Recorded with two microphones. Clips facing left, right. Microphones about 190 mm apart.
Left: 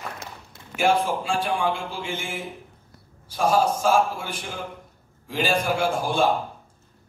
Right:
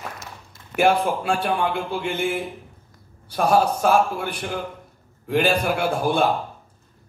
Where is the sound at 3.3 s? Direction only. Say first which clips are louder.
Right 2 dB; 65° right (ahead or behind).